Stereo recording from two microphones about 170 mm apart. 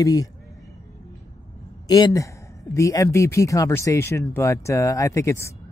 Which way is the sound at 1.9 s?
20° left (ahead or behind).